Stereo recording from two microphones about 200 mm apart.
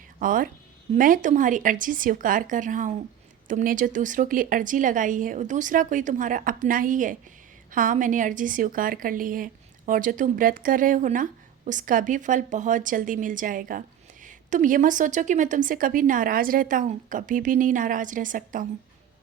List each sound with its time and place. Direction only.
0.2 s a woman's voice: 45° right (ahead or behind)